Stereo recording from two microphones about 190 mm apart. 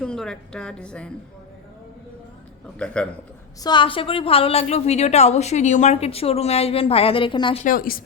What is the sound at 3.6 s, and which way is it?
A woman's voice, 25° left (ahead or behind).